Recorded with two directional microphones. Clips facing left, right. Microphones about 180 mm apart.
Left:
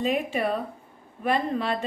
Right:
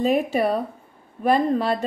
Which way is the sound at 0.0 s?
40° right (ahead or behind).